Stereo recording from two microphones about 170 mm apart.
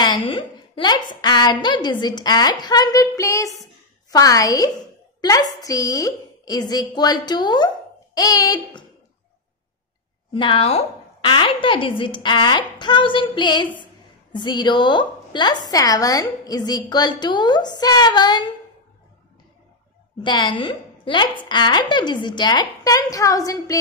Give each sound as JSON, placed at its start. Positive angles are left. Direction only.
{"t": 0.0, "sound": "a woman's voice", "side_deg": 25}
{"t": 10.3, "sound": "a woman's voice", "side_deg": 30}
{"t": 20.2, "sound": "a woman's voice", "side_deg": 25}